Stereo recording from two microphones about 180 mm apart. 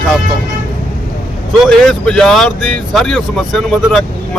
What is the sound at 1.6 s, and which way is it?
Speech, centre (ahead or behind).